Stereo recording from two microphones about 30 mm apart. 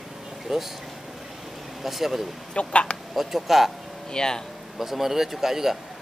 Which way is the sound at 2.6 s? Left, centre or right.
Left.